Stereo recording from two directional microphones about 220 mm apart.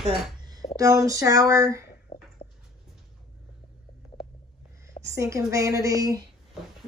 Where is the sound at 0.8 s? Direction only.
15° right (ahead or behind).